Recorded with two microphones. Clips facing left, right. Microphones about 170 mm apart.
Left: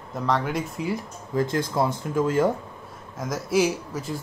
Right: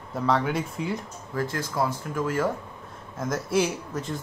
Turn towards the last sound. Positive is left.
turn(degrees=5)  # may be behind; listen again after turning